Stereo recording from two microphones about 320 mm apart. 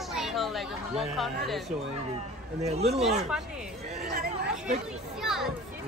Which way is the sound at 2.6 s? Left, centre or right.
Centre.